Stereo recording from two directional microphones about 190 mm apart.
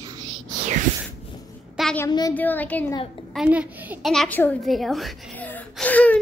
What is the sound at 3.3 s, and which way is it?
Speech, 5° right (ahead or behind).